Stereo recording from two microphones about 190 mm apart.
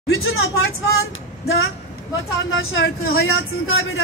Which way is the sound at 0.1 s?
90° left.